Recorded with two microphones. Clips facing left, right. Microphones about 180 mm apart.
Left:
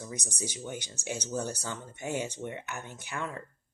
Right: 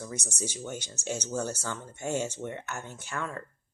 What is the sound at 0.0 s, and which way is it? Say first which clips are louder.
Speech: right 2 dB; 15° left (ahead or behind).